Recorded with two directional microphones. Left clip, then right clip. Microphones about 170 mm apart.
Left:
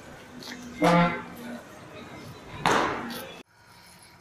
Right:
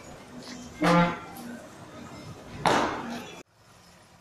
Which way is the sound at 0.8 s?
50° left (ahead or behind).